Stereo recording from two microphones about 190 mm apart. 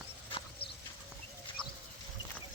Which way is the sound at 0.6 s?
55° left (ahead or behind).